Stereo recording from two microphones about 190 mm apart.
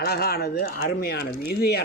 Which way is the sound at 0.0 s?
55° left (ahead or behind).